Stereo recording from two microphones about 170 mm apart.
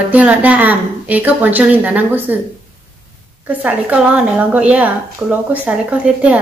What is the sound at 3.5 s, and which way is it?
A woman's voice, 10° right (ahead or behind).